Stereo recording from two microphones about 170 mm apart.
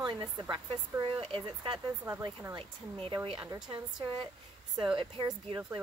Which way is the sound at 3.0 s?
30° right (ahead or behind).